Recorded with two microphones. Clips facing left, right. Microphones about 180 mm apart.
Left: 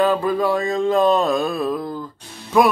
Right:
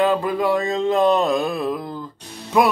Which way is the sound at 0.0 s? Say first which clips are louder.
Left 1 dB; 20° right (ahead or behind).